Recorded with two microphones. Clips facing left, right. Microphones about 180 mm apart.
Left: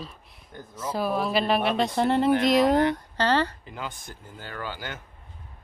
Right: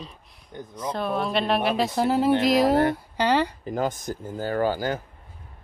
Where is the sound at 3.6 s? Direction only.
45° right (ahead or behind).